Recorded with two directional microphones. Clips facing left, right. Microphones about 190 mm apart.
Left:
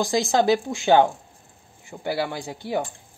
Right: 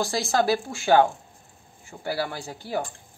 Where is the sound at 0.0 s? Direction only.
15° left (ahead or behind).